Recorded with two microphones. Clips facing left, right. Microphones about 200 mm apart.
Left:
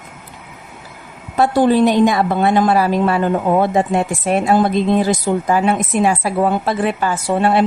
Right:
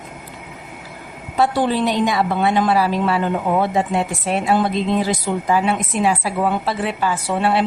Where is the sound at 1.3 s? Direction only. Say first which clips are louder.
Left 5 dB; 45° left (ahead or behind).